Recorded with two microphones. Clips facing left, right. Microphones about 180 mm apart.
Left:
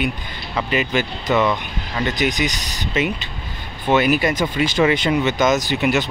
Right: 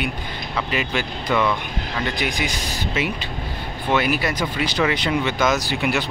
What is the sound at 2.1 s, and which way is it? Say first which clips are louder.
Speech: left 4 dB; 40° left (ahead or behind).